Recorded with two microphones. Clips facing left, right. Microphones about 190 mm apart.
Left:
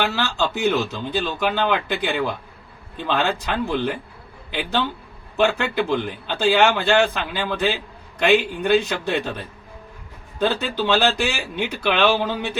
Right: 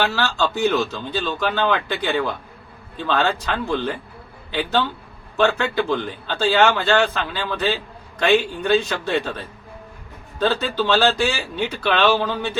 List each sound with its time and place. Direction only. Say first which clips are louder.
0.0 s a man's voice: right 1 dB; 15° left (ahead or behind)
5.4 s a man's voice: right 1 dB; 15° left (ahead or behind)